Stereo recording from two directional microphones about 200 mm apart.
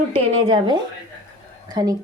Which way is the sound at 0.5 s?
25° right (ahead or behind).